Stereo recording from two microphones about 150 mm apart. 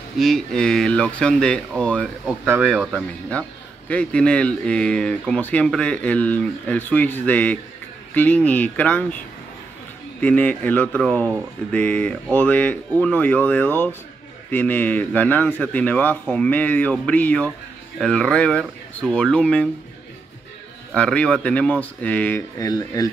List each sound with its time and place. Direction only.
0.2 s speech: centre (ahead or behind)
2.2 s speech: 10° right (ahead or behind)
3.9 s speech: 5° left (ahead or behind)
10.2 s speech: 10° left (ahead or behind)
20.9 s speech: 10° left (ahead or behind)
22.6 s speech: 25° left (ahead or behind)